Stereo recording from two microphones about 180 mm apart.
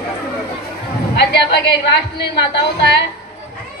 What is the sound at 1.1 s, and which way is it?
A woman's voice, 70° left (ahead or behind).